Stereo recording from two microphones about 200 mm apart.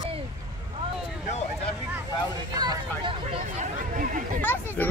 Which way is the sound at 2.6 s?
25° right (ahead or behind).